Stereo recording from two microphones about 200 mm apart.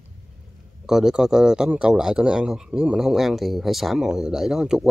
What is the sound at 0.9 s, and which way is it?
A man's voice, centre (ahead or behind).